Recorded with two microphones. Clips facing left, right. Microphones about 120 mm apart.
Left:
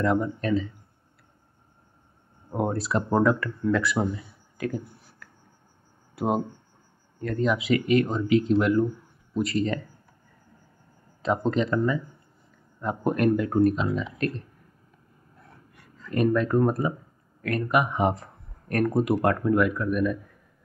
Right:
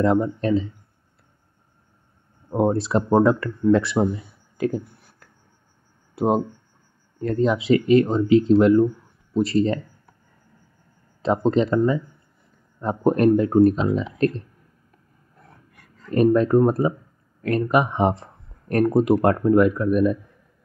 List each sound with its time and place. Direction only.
0.0 s speech: 30° right (ahead or behind)
2.5 s speech: 30° right (ahead or behind)
11.2 s speech: 30° right (ahead or behind)
16.1 s speech: 35° right (ahead or behind)